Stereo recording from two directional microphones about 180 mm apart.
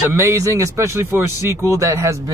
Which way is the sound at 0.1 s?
15° right (ahead or behind).